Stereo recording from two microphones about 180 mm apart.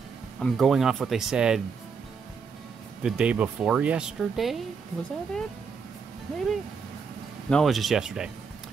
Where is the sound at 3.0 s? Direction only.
5° right (ahead or behind).